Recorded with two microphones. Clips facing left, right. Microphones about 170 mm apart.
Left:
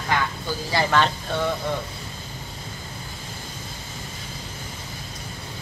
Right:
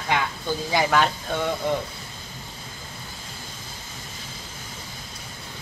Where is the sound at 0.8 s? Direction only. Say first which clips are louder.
Even; 5° right (ahead or behind).